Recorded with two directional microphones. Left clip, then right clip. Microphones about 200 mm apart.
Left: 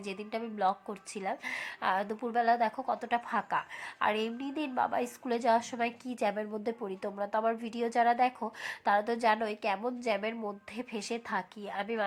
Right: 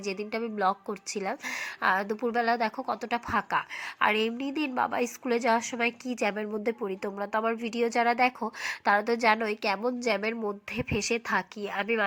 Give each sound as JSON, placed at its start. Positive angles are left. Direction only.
{"t": 0.0, "sound": "a woman's voice", "side_deg": -20}